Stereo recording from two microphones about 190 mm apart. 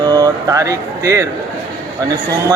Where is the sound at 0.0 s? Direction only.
20° right (ahead or behind).